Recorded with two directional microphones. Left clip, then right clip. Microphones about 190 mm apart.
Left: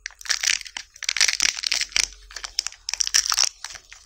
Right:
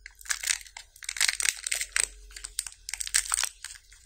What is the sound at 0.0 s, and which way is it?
Crunch, 20° left (ahead or behind).